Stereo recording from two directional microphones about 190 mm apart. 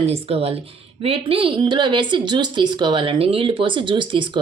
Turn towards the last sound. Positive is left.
turn(degrees=-25)  # may be behind; listen again after turning